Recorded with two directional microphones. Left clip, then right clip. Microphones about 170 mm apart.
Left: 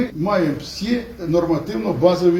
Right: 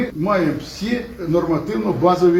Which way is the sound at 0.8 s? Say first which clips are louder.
Even; 65° left (ahead or behind).